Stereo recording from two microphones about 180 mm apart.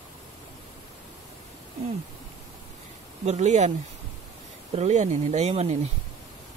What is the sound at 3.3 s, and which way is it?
Speech, 40° right (ahead or behind).